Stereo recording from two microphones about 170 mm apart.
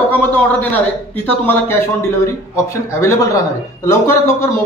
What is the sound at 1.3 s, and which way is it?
Speech, 10° left (ahead or behind).